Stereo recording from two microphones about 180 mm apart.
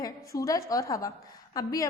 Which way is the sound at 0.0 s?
20° left (ahead or behind).